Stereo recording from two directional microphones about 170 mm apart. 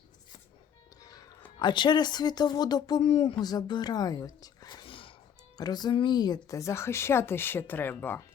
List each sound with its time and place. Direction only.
1.0 s music: 20° left (ahead or behind)
1.5 s speech: 25° left (ahead or behind)